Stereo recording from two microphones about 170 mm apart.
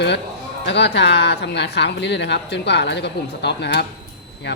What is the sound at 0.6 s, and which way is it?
Speech, 90° left.